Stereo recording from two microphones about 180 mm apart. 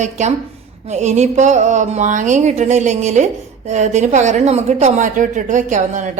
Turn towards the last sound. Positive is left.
turn(degrees=-45)  # may be behind; listen again after turning